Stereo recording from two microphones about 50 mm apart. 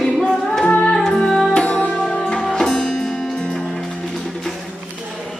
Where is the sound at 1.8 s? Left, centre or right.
Left.